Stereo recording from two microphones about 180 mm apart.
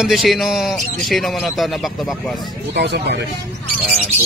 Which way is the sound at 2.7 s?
70° right (ahead or behind).